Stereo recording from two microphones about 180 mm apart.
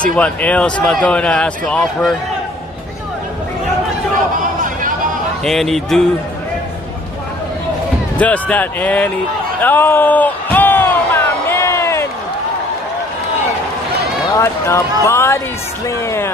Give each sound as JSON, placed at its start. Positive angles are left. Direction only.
{"t": 0.0, "sound": "speech", "side_deg": 5}
{"t": 5.4, "sound": "speech", "side_deg": 0}
{"t": 8.2, "sound": "speech", "side_deg": 10}
{"t": 9.6, "sound": "a sound", "side_deg": 10}
{"t": 14.3, "sound": "speech", "side_deg": 15}